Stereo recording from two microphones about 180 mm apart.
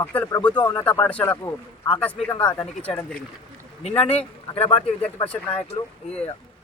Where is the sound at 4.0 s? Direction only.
35° left (ahead or behind).